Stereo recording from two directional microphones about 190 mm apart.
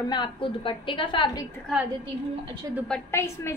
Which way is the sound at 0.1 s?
25° left (ahead or behind).